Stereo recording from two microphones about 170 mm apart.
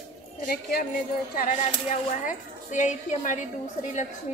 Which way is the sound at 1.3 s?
50° left (ahead or behind).